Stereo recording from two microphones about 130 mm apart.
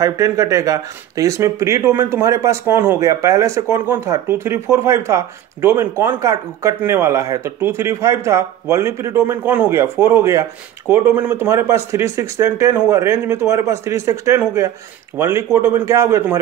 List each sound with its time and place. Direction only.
0.0 s speech: 25° right (ahead or behind)